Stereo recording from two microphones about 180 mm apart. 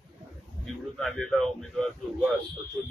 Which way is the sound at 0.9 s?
Centre (ahead or behind).